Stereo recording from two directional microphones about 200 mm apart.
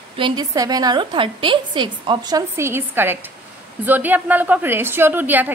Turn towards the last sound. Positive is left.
turn(degrees=-10)  # may be behind; listen again after turning